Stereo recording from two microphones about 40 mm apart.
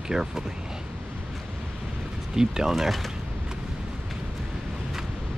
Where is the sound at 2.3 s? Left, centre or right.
Centre.